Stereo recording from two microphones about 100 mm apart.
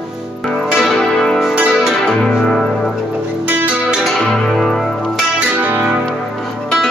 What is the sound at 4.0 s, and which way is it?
Music, centre (ahead or behind).